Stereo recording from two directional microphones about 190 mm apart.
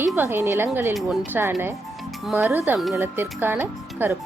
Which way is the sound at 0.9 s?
Centre (ahead or behind).